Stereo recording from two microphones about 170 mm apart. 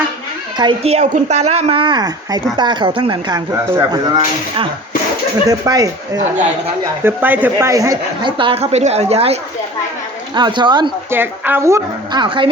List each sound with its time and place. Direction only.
0.5 s speech: 30° right (ahead or behind)
7.0 s speech: 10° right (ahead or behind); by 9.4 s 35° right (ahead or behind)
10.3 s speech: 25° right (ahead or behind)
11.1 s a woman's voice: 10° right (ahead or behind)
12.2 s speech: 30° right (ahead or behind)